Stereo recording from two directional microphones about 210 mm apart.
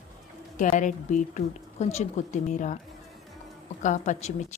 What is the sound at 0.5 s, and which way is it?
Speech, 35° left (ahead or behind).